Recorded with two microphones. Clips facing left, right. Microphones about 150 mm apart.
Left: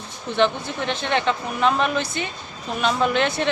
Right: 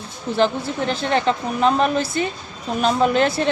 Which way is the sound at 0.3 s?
35° right (ahead or behind).